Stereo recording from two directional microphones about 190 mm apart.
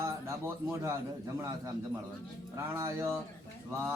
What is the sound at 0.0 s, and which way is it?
Speech, 15° right (ahead or behind).